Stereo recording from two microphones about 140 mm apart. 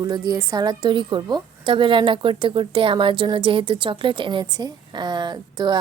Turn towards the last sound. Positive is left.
turn(degrees=-30)  # may be behind; listen again after turning